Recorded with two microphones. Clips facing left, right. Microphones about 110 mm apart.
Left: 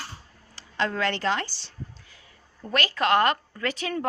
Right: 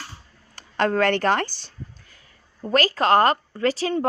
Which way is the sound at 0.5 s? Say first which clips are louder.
Right 6 dB; 50° right (ahead or behind).